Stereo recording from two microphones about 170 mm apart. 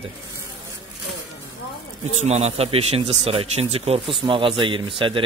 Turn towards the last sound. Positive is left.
turn(degrees=-30)  # may be behind; listen again after turning